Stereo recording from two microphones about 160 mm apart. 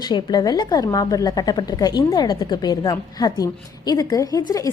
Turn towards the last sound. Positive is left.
turn(degrees=25)  # may be behind; listen again after turning